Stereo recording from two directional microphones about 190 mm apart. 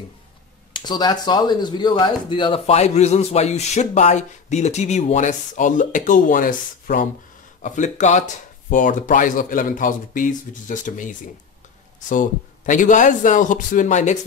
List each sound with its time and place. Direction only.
0.7 s speech: 20° left (ahead or behind); by 11.1 s 45° left (ahead or behind)
12.1 s speech: 45° left (ahead or behind)